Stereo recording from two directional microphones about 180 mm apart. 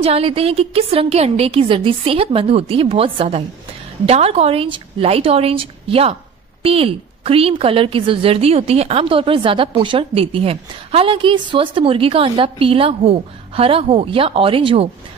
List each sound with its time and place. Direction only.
0.0 s a woman's voice: 30° right (ahead or behind)